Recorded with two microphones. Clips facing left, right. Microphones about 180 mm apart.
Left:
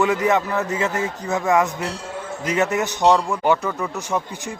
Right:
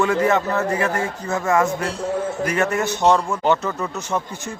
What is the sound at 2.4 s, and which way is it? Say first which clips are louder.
Speech: left 3 dB; 20° left (ahead or behind).